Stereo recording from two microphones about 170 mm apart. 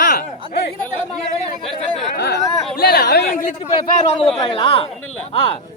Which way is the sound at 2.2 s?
75° left (ahead or behind).